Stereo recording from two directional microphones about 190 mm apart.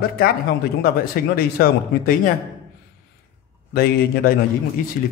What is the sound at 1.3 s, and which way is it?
Speech, 50° left (ahead or behind).